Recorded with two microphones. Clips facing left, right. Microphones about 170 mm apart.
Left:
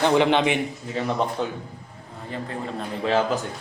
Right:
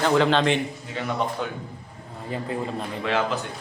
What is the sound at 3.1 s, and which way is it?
Speech, 35° left (ahead or behind).